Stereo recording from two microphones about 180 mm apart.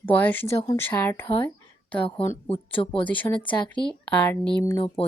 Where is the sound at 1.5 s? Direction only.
10° left (ahead or behind).